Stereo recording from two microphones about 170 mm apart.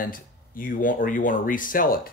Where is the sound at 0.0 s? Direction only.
55° left (ahead or behind).